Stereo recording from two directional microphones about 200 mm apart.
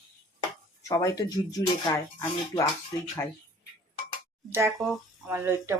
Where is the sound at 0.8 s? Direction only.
15° left (ahead or behind).